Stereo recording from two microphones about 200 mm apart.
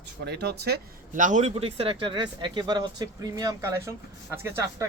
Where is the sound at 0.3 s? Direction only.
55° right (ahead or behind).